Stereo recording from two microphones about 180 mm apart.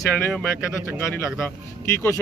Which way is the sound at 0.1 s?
5° left (ahead or behind).